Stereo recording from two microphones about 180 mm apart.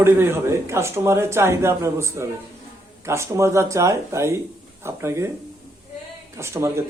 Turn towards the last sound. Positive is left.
turn(degrees=-15)  # may be behind; listen again after turning